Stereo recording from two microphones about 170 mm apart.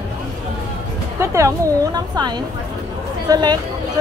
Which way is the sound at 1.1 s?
15° right (ahead or behind).